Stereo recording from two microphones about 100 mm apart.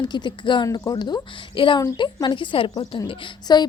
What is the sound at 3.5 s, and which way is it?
Speech, 45° left (ahead or behind).